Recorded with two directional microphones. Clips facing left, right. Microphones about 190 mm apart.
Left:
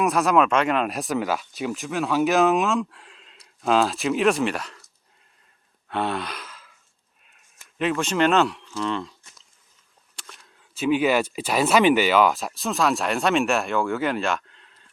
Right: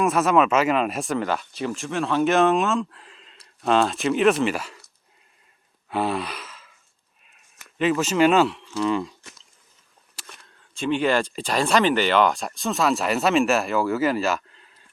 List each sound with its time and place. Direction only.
0.0 s speech: centre (ahead or behind)
5.9 s gasp: 5° right (ahead or behind)
7.8 s speech: centre (ahead or behind)
10.4 s speech: 5° left (ahead or behind)